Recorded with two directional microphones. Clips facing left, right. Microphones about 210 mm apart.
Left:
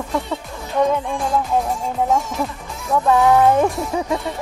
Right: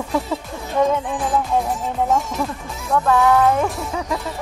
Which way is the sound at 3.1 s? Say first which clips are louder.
Left 2 dB; 15° left (ahead or behind).